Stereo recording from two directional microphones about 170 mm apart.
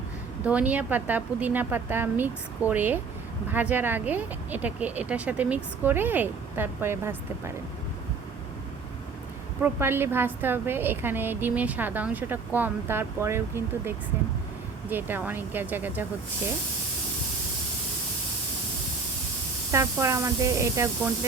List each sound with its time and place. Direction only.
0.4 s a woman's voice: 10° right (ahead or behind)
9.6 s a woman's voice: 15° right (ahead or behind)
19.7 s a woman's voice: 15° right (ahead or behind)